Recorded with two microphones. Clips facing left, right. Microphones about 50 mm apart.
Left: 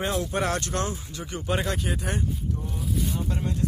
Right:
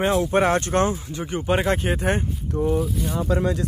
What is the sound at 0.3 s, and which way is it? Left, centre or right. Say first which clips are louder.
Speech: right 8 dB; right.